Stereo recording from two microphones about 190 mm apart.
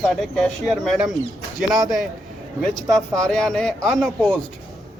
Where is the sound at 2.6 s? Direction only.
5° left (ahead or behind).